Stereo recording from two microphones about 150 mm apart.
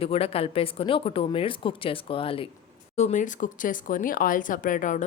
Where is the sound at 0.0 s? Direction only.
40° left (ahead or behind).